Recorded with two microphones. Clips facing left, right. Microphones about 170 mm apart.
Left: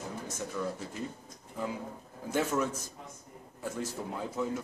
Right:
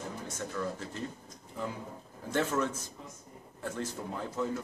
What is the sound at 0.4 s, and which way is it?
Speech, 10° left (ahead or behind).